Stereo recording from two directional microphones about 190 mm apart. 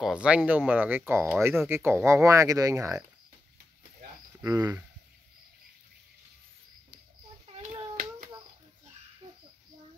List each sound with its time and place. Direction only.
0.0 s speech: 5° right (ahead or behind)
4.4 s speech: 15° right (ahead or behind)
7.5 s hands: 35° right (ahead or behind)
9.2 s a sound: 20° right (ahead or behind)